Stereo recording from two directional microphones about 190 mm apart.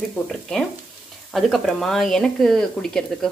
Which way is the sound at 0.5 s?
5° left (ahead or behind).